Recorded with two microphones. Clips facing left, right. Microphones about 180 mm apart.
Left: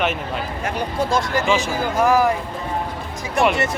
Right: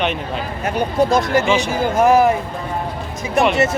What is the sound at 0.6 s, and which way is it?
Speech, 20° right (ahead or behind).